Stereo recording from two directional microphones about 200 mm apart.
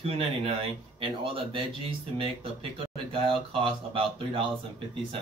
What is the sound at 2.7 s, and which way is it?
Speech, 25° right (ahead or behind).